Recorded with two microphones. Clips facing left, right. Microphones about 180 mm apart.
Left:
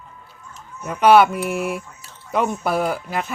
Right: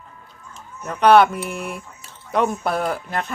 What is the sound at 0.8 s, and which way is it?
Speech, 5° left (ahead or behind).